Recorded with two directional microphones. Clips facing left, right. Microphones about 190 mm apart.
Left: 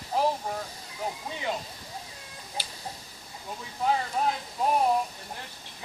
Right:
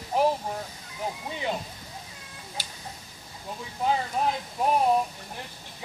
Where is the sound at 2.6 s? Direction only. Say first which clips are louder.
Left 2 dB; 45° right (ahead or behind).